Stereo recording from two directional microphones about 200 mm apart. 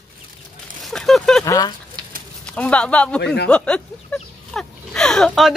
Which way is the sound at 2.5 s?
5° left (ahead or behind).